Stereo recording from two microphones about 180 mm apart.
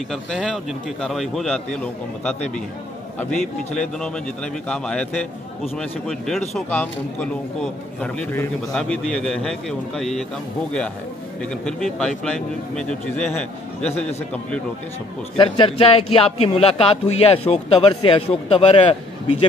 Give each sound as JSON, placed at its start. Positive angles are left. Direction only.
{"t": 0.1, "sound": "a man's voice", "side_deg": 0}
{"t": 11.4, "sound": "a man's voice", "side_deg": 5}
{"t": 15.3, "sound": "speech", "side_deg": 25}